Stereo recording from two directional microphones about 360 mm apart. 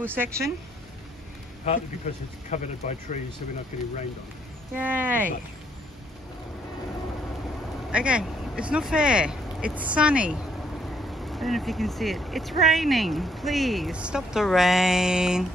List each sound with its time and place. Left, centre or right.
0.0 s speech: centre
1.7 s speech: centre
4.7 s speech: centre
7.9 s speech: centre